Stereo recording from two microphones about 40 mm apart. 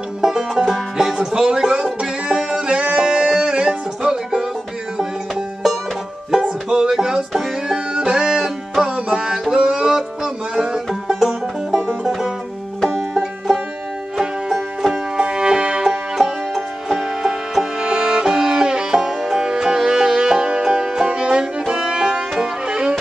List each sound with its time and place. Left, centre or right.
0.2 s music: centre
5.3 s music: centre
6.7 s music: centre
13.1 s music: centre
15.1 s music: right
16.2 s music: centre
21.1 s music: right